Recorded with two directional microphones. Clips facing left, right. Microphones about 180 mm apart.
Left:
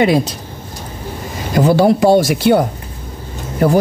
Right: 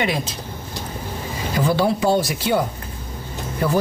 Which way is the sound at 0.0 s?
40° left (ahead or behind).